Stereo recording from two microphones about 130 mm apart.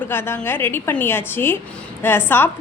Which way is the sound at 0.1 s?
15° left (ahead or behind).